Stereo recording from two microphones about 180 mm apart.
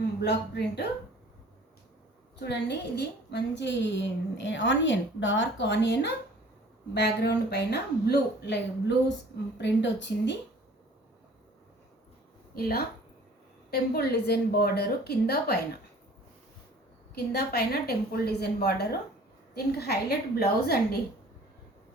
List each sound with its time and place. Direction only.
0.2 s a woman's voice: 70° left (ahead or behind)
2.4 s a woman's voice: 65° left (ahead or behind)
9.6 s a woman's voice: 80° left
12.5 s a woman's voice: 60° left (ahead or behind)
17.3 s a woman's voice: 60° left (ahead or behind)